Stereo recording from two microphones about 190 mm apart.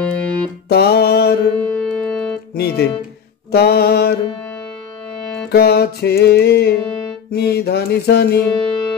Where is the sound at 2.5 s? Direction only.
60° left (ahead or behind).